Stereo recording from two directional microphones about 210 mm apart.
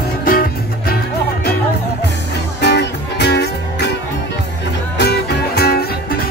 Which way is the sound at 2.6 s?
55° left (ahead or behind).